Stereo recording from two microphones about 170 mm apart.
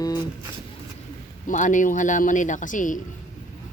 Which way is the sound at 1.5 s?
50° left (ahead or behind).